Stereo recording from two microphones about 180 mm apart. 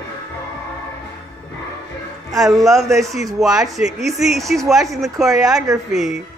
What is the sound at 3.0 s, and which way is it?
Speech, centre (ahead or behind).